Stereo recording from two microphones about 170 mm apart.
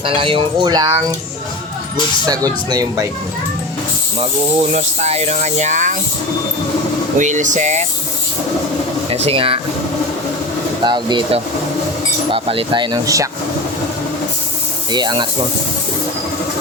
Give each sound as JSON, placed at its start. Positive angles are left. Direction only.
{"t": 0.0, "sound": "speech", "side_deg": -30}
{"t": 2.2, "sound": "speech", "side_deg": -20}
{"t": 4.7, "sound": "speech", "side_deg": -40}
{"t": 7.2, "sound": "speech", "side_deg": -45}
{"t": 9.0, "sound": "speech", "side_deg": -35}
{"t": 10.8, "sound": "speech", "side_deg": -25}
{"t": 14.9, "sound": "speech", "side_deg": -25}